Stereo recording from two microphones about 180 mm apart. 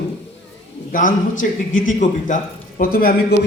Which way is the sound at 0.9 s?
45° left (ahead or behind).